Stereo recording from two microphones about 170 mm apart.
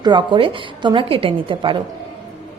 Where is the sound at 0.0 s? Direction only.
25° right (ahead or behind).